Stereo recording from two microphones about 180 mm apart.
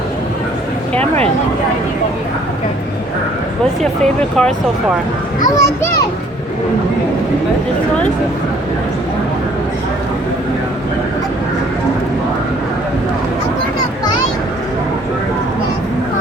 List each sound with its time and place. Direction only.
0.9 s speech: 35° right (ahead or behind)
4.0 s speech: 5° left (ahead or behind)
5.5 s a child's voice: 20° left (ahead or behind)